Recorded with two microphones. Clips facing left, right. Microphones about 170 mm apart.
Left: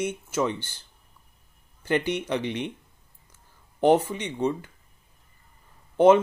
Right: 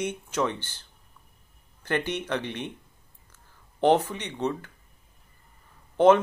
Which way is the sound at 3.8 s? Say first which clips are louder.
Left 2 dB; 10° left (ahead or behind).